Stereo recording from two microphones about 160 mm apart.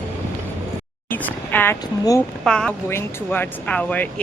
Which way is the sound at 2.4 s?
5° left (ahead or behind).